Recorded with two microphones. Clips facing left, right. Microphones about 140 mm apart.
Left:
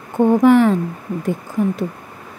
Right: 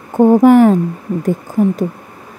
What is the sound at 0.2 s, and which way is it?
Speech, 40° right (ahead or behind).